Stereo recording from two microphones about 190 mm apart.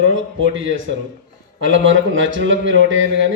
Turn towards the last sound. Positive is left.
turn(degrees=-75)  # may be behind; listen again after turning